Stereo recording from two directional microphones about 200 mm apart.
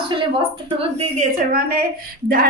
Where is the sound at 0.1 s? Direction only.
25° right (ahead or behind).